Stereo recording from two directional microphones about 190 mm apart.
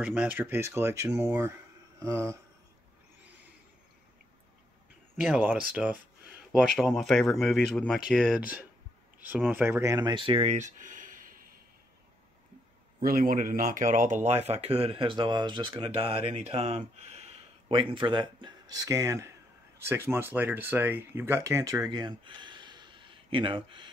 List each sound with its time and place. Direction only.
0.0 s speech: 5° right (ahead or behind)
5.1 s speech: 5° right (ahead or behind); by 11.2 s 45° right (ahead or behind)
13.0 s speech: 45° right (ahead or behind); by 21.8 s 15° right (ahead or behind)
21.9 s a sound: 25° right (ahead or behind)